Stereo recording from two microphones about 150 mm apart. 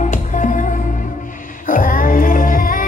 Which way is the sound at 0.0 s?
55° left (ahead or behind).